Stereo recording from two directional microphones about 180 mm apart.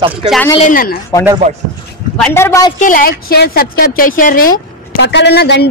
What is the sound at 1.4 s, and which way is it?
Speech, 40° right (ahead or behind).